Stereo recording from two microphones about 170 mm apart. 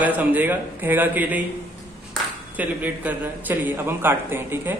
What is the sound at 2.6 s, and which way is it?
A man's voice, 10° right (ahead or behind).